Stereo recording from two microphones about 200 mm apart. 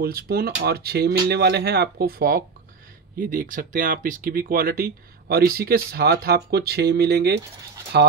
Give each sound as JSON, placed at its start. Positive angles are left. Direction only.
{"t": 0.0, "sound": "speech", "side_deg": -50}